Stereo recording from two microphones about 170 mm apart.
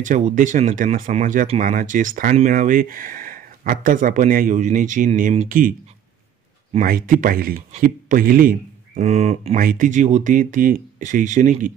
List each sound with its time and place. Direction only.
0.0 s speech: 50° right (ahead or behind)
9.6 s speech: 55° right (ahead or behind)